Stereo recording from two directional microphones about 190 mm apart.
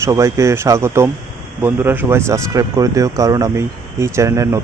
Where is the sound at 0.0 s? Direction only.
15° right (ahead or behind).